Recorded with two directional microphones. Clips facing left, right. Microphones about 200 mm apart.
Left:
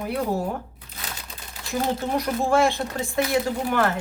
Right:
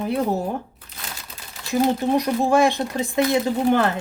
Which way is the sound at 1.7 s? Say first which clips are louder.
Right 5 dB; 20° right (ahead or behind).